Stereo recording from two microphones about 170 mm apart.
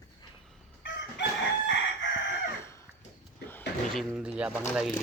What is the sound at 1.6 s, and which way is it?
Crowing, 90° left.